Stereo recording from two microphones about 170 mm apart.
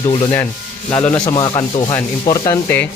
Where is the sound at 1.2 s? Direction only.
25° left (ahead or behind).